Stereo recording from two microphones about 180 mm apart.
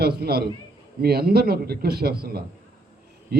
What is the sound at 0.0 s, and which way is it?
A man's voice, 60° right (ahead or behind).